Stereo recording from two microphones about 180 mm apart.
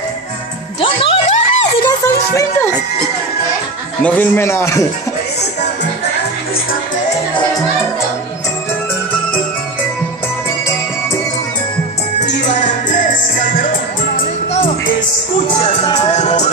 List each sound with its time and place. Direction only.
0.7 s music: 30° left (ahead or behind)
1.9 s music: 20° left (ahead or behind)
4.0 s speech: 10° left (ahead or behind)
12.4 s music: 45° left (ahead or behind)
16.1 s music: 40° left (ahead or behind)